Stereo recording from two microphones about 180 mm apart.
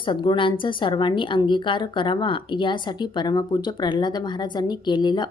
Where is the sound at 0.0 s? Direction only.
25° left (ahead or behind).